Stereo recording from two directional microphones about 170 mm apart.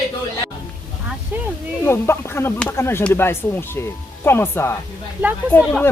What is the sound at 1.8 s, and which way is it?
Speech, 15° left (ahead or behind).